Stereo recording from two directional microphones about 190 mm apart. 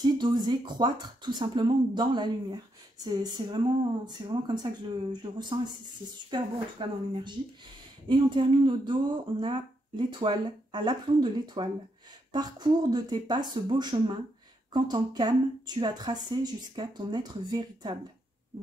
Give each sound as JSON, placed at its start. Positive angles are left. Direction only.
{"t": 0.0, "sound": "speech", "side_deg": -25}